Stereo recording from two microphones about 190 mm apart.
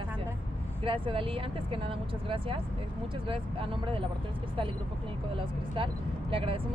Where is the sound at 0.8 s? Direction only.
25° right (ahead or behind).